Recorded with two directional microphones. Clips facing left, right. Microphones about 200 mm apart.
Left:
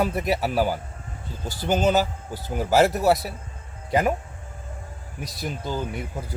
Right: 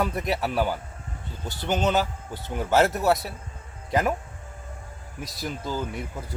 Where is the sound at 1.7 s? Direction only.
40° left (ahead or behind).